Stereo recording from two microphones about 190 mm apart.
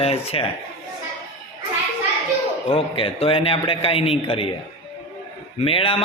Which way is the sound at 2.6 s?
30° left (ahead or behind).